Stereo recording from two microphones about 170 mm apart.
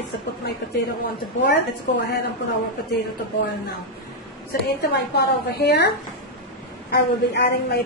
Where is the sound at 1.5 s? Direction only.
75° left (ahead or behind).